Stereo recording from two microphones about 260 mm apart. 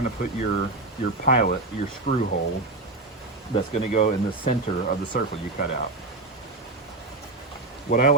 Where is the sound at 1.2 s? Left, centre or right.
Left.